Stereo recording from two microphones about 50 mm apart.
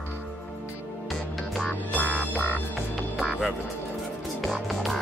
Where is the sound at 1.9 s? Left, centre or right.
Left.